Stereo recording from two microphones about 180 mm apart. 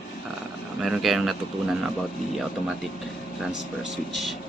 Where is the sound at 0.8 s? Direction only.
Centre (ahead or behind).